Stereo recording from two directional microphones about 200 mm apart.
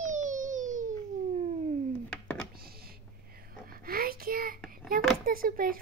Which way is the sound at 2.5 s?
50° right (ahead or behind).